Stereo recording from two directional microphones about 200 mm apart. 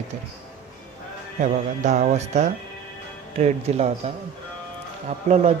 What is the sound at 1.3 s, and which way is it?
Speech, 35° right (ahead or behind).